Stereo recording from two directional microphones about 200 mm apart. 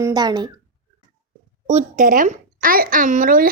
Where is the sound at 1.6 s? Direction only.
40° right (ahead or behind).